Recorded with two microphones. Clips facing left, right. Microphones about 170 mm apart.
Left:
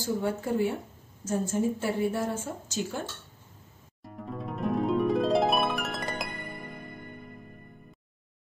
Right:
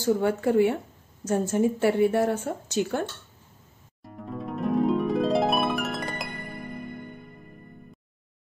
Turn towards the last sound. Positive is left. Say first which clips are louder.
# right 1 dB
turn(degrees=0)  # may be behind; listen again after turning